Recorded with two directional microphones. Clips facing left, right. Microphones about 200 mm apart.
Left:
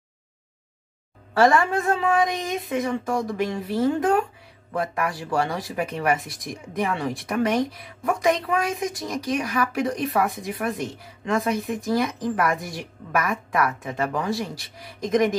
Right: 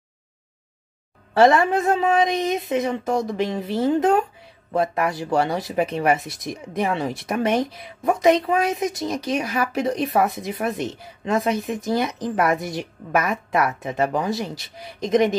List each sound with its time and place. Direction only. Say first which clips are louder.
1.3 s speech: right 3 dB; 20° right (ahead or behind)